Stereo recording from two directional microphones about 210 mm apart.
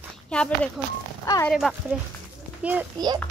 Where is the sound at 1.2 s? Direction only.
15° left (ahead or behind).